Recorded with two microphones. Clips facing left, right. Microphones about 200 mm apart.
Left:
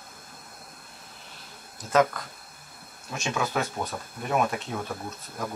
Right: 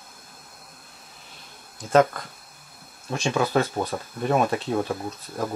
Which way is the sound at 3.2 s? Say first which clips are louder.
Right 6 dB; 30° right (ahead or behind).